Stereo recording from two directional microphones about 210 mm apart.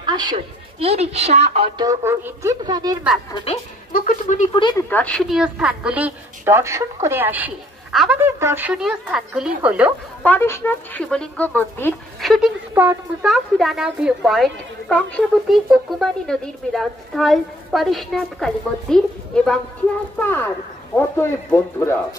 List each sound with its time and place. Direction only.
0.0 s a woman's voice: 20° right (ahead or behind)
3.9 s speech: 40° left (ahead or behind)
4.5 s speech: 20° left (ahead or behind)
4.8 s a woman's voice: 5° left (ahead or behind)
10.2 s speech: 10° left (ahead or behind)